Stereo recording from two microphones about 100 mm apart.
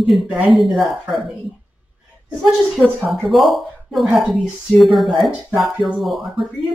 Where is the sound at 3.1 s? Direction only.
Centre (ahead or behind).